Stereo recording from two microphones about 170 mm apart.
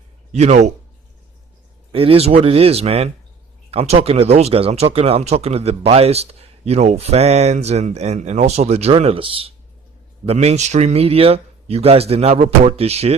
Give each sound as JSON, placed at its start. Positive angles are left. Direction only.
{"t": 0.3, "sound": "speech", "side_deg": -40}
{"t": 1.9, "sound": "speech", "side_deg": -35}